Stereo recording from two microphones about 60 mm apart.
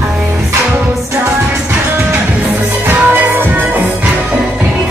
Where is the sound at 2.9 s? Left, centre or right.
Right.